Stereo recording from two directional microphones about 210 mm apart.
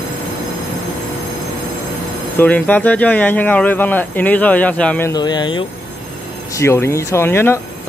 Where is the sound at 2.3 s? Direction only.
5° left (ahead or behind).